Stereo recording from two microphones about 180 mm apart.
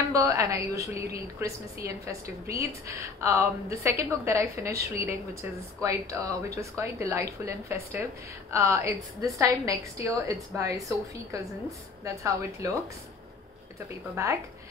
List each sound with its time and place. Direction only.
0.1 s a woman's voice: 20° right (ahead or behind)
14.2 s a woman's voice: 15° right (ahead or behind)